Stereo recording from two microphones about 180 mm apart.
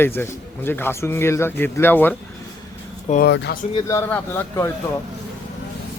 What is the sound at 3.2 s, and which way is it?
Speech, 70° left (ahead or behind).